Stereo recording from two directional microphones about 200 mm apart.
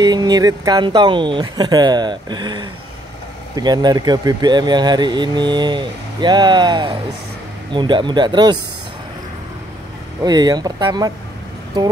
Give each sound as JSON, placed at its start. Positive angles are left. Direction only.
{"t": 0.0, "sound": "speech", "side_deg": -20}
{"t": 10.2, "sound": "speech", "side_deg": -20}